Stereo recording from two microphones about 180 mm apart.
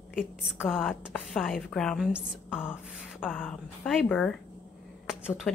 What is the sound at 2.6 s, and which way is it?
Speech, 10° left (ahead or behind).